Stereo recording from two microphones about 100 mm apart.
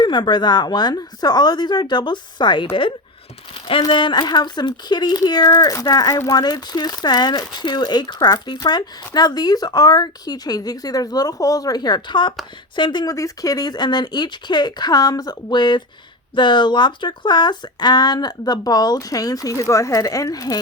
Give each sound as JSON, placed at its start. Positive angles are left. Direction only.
{"t": 0.0, "sound": "speech", "side_deg": 50}
{"t": 3.5, "sound": "speech", "side_deg": 65}
{"t": 3.8, "sound": "speech", "side_deg": 50}